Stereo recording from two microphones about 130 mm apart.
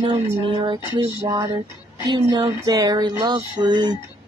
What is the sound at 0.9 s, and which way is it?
Speech, 30° right (ahead or behind).